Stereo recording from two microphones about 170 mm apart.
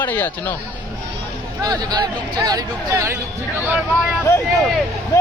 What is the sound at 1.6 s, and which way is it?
Speech, 25° right (ahead or behind).